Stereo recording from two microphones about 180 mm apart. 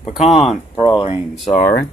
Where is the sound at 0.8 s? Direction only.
25° left (ahead or behind).